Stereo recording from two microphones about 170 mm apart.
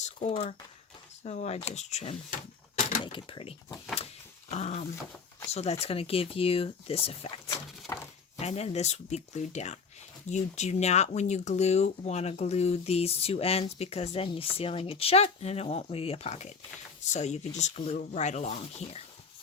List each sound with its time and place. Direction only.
0.0 s speech: 45° left (ahead or behind)
3.0 s speech: 30° left (ahead or behind)
7.9 s a sound: 15° left (ahead or behind)
8.4 s speech: 40° left (ahead or behind)